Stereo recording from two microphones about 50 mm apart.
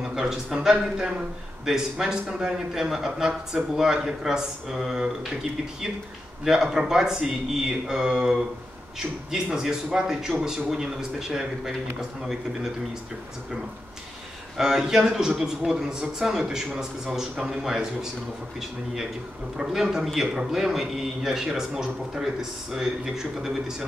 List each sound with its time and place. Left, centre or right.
0.0 s a sound: centre
0.7 s speech: centre
6.4 s speech: centre
14.6 s speech: centre
19.5 s speech: centre